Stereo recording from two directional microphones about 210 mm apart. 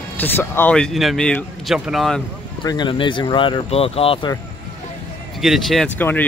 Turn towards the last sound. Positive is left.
turn(degrees=10)  # may be behind; listen again after turning